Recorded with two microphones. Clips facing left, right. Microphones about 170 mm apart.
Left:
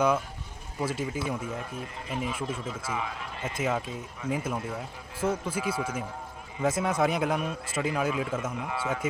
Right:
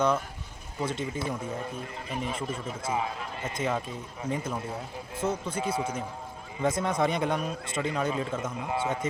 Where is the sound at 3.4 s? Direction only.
5° left (ahead or behind).